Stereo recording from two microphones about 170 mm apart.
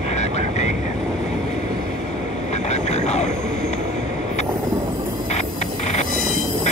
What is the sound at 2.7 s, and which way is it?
Vehicle, 40° left (ahead or behind).